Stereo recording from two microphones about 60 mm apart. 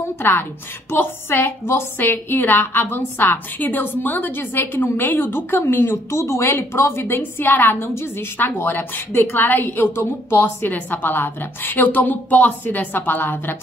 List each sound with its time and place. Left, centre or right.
0.2 s a woman's voice: left